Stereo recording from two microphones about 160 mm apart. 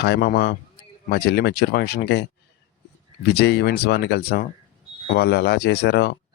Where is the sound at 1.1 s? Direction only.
90° left.